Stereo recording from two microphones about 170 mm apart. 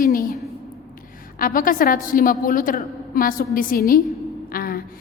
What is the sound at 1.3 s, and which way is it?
A woman's voice, 55° left (ahead or behind).